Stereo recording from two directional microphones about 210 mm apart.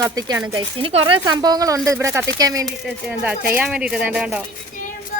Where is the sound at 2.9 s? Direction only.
5° right (ahead or behind).